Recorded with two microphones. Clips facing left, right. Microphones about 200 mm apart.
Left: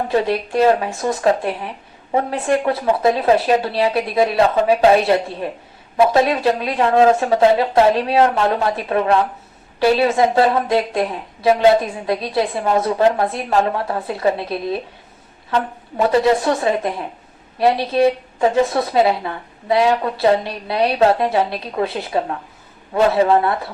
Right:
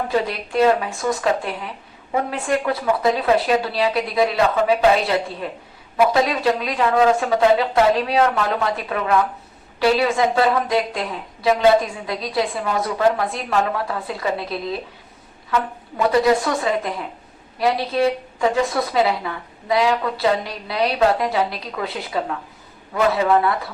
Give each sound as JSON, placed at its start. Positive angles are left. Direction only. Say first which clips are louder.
{"t": 0.1, "sound": "a woman's voice", "louder": "left 4 dB", "side_deg": 25}